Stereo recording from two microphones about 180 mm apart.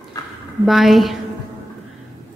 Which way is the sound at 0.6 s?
Centre (ahead or behind).